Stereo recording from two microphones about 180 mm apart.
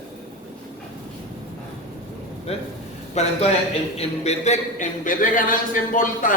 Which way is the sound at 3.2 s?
40° left (ahead or behind).